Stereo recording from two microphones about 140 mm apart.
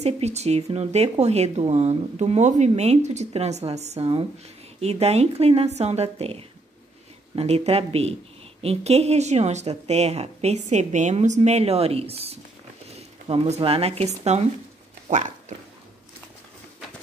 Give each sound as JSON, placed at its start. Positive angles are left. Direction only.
{"t": 0.0, "sound": "speech", "side_deg": -50}